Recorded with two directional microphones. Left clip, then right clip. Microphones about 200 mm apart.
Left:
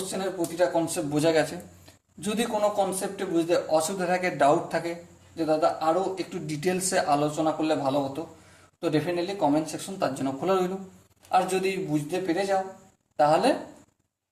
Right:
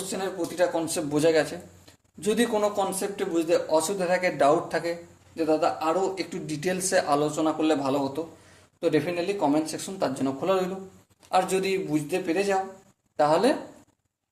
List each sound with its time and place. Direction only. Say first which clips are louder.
0.1 s speech: right 1 dB; 30° right (ahead or behind)
1.1 s speech: right 1 dB; 10° right (ahead or behind)
2.7 s speech: even; 30° right (ahead or behind); by 4.9 s 5° right (ahead or behind)
5.4 s speech: even; 30° right (ahead or behind)
6.4 s speech: left 1 dB; 10° right (ahead or behind)
7.3 s speech: right 1 dB; 30° right (ahead or behind)
8.8 s speech: right 2 dB; 20° right (ahead or behind)
11.3 s speech: even; 20° right (ahead or behind)